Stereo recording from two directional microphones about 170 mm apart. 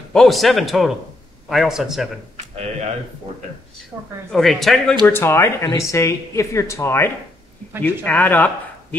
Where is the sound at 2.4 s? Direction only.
40° right (ahead or behind).